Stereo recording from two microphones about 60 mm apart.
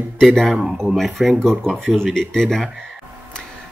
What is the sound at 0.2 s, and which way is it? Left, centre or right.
Speech, centre.